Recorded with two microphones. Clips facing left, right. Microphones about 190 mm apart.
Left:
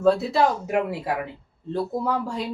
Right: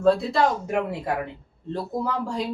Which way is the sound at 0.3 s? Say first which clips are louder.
Left 1 dB; 5° left (ahead or behind).